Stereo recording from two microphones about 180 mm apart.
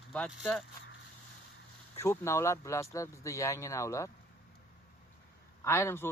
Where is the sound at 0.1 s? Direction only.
5° left (ahead or behind).